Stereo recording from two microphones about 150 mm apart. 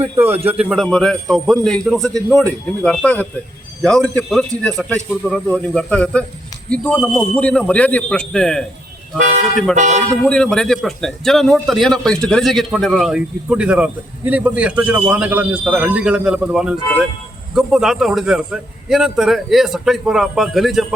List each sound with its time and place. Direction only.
0.0 s a man's voice: 15° right (ahead or behind)
0.6 s a man's voice: 5° right (ahead or behind)
9.7 s a man's voice: 55° right (ahead or behind)
10.2 s a man's voice: 5° left (ahead or behind)